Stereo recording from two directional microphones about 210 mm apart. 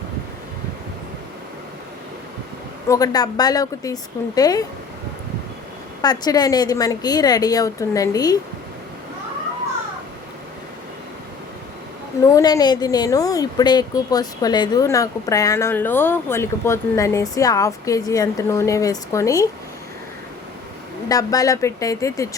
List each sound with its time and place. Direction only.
2.9 s a woman's voice: 20° left (ahead or behind)
6.0 s a woman's voice: 20° left (ahead or behind)
12.2 s a woman's voice: 15° left (ahead or behind)
21.1 s a woman's voice: 15° left (ahead or behind)